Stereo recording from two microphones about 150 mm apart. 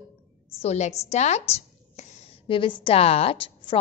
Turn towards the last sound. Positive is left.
turn(degrees=35)  # may be behind; listen again after turning